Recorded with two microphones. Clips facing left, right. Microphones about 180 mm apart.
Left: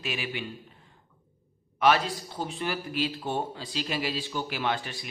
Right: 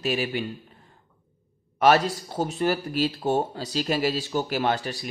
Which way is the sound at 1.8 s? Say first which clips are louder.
Right 4 dB; 45° right (ahead or behind).